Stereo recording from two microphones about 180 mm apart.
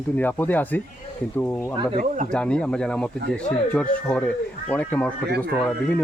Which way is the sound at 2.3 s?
5° left (ahead or behind).